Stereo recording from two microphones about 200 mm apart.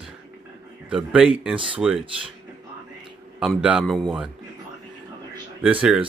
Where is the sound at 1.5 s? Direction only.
25° right (ahead or behind).